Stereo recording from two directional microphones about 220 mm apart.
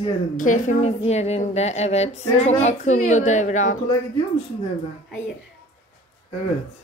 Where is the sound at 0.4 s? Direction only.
35° left (ahead or behind).